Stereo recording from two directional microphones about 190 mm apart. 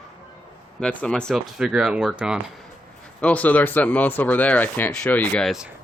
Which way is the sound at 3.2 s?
5° left (ahead or behind).